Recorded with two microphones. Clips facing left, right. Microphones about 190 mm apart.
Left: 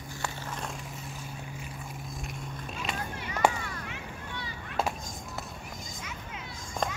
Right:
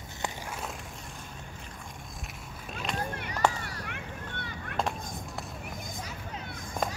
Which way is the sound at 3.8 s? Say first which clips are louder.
Right 1 dB; 60° right (ahead or behind).